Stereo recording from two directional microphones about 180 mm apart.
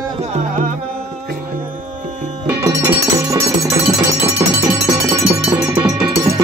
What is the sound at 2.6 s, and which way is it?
Music, 20° right (ahead or behind).